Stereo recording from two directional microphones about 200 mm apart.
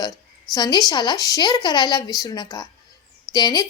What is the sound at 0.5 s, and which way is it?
A woman's voice, 20° left (ahead or behind).